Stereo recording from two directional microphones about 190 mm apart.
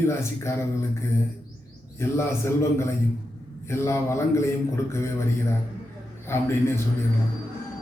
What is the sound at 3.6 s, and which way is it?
A man's voice, 15° left (ahead or behind).